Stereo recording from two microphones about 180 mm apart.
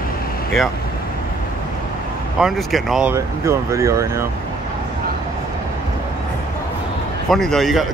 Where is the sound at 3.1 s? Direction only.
15° right (ahead or behind).